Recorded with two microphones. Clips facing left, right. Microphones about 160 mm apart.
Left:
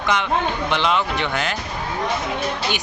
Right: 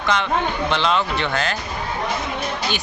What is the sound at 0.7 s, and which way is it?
Speech, 15° left (ahead or behind).